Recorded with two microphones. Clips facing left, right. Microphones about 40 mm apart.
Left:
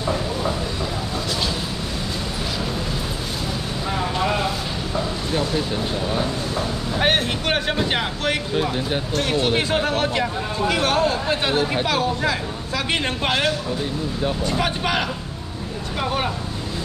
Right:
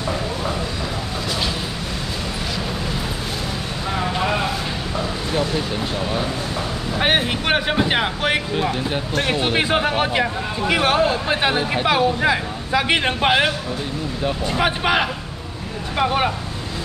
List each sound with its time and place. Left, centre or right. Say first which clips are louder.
7.0 s speech: right 1 dB; centre